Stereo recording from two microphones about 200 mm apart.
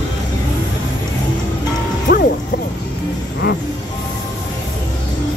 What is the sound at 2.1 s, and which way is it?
Music, 45° left (ahead or behind).